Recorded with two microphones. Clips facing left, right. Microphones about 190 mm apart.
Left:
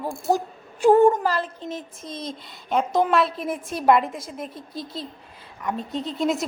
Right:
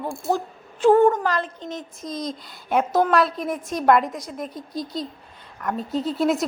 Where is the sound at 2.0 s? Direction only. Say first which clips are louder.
Right 4 dB; 30° left (ahead or behind).